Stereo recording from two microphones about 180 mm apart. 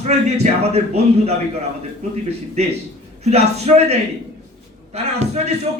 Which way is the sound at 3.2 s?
35° right (ahead or behind).